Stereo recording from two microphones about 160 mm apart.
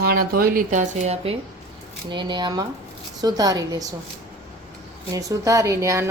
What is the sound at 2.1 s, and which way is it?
Speech, 30° right (ahead or behind).